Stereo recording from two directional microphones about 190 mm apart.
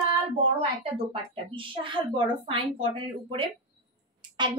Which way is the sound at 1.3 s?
25° right (ahead or behind).